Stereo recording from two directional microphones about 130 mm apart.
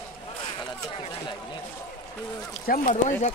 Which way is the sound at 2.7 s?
90° left.